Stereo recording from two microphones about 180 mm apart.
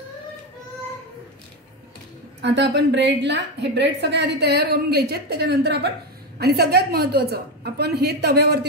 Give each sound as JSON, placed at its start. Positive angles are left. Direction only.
{"t": 2.4, "sound": "a woman's voice", "side_deg": -70}